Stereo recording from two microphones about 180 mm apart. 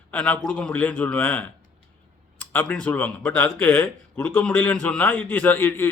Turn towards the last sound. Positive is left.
turn(degrees=10)  # may be behind; listen again after turning